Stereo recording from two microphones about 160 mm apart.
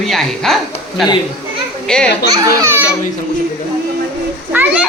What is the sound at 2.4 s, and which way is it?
Speech, 20° right (ahead or behind).